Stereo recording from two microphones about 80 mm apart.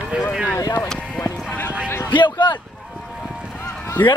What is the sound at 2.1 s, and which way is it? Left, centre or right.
Speech, left.